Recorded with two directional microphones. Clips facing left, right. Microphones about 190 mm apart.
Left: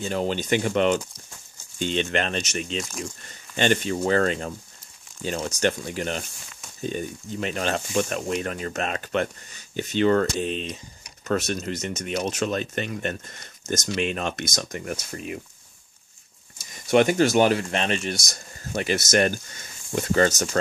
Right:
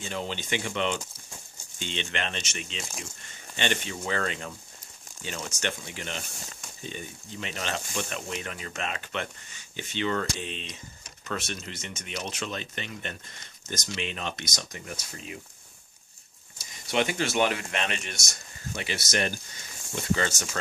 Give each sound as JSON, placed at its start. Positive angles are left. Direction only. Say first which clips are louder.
{"t": 0.0, "sound": "speech", "louder": "left 8 dB", "side_deg": 45}
{"t": 16.9, "sound": "speech", "louder": "left 9 dB", "side_deg": 45}
{"t": 18.7, "sound": "speech", "louder": "left 8 dB", "side_deg": 45}